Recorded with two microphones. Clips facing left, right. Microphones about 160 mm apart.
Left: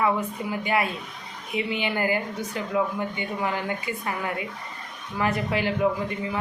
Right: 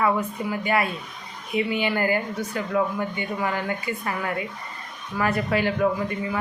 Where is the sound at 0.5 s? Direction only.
20° left (ahead or behind).